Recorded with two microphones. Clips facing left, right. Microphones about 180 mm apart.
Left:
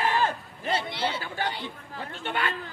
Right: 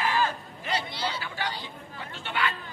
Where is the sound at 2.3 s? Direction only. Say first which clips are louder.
Even; 50° left (ahead or behind).